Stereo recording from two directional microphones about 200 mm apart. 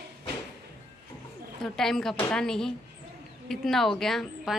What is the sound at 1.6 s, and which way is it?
A woman's voice, centre (ahead or behind).